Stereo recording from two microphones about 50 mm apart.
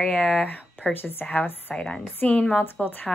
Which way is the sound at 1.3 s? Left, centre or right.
Left.